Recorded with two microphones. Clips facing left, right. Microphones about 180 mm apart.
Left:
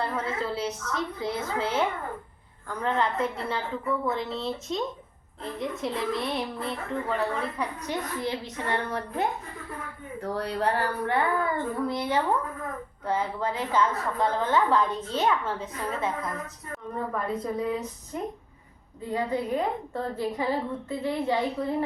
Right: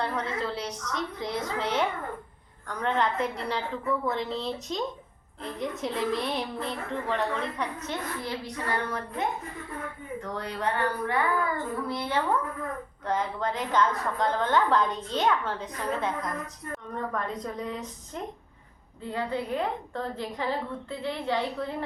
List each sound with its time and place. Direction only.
0.0 s a woman's voice: 5° left (ahead or behind)
8.4 s a woman's voice: 30° left (ahead or behind)
11.9 s a woman's voice: 15° left (ahead or behind)
13.1 s a woman's voice: 5° left (ahead or behind)